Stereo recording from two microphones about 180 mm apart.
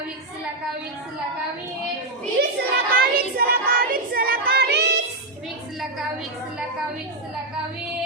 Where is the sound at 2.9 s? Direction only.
55° right (ahead or behind).